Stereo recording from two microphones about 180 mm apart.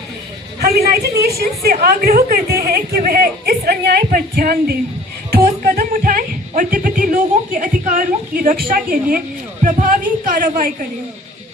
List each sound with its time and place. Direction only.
0.6 s a woman's voice: 60° right (ahead or behind)